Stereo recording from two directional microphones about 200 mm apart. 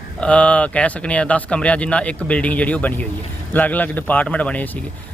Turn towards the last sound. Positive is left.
turn(degrees=5)  # may be behind; listen again after turning